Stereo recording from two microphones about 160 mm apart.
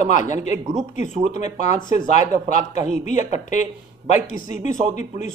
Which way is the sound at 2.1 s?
45° left (ahead or behind).